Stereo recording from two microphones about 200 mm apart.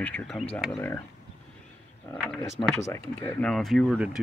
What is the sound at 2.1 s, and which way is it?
Speech, 15° left (ahead or behind).